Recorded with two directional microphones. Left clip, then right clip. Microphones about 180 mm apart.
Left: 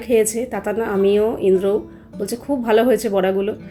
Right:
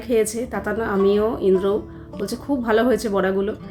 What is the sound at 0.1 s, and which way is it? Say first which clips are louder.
A woman's voice: left 3 dB; 10° left (ahead or behind).